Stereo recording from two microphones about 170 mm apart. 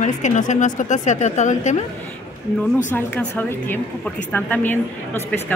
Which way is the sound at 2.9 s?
10° left (ahead or behind).